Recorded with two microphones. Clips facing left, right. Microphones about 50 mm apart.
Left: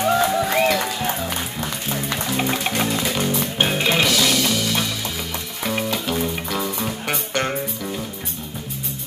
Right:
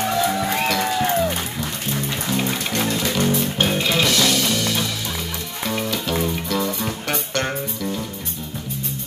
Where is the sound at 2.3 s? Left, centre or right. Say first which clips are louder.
Left 1 dB; centre.